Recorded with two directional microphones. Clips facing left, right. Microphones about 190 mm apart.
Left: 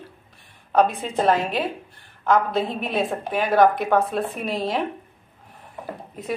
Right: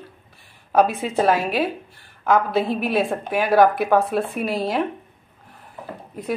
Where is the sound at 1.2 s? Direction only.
5° right (ahead or behind).